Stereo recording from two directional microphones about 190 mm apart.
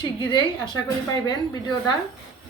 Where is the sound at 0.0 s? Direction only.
25° left (ahead or behind).